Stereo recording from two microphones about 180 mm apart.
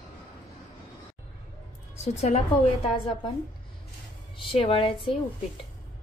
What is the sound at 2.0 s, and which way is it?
Speech, 35° left (ahead or behind).